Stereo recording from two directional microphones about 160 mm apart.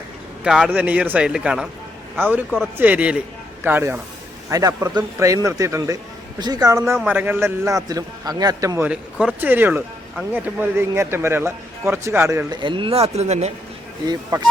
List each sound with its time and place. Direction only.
0.4 s a man's voice: 5° right (ahead or behind)
8.9 s speech: 5° right (ahead or behind)
12.5 s speech: 30° right (ahead or behind)
14.0 s a man's voice: 20° right (ahead or behind)